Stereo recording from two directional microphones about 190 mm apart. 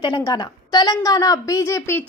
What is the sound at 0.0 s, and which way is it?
A woman's voice, 25° left (ahead or behind).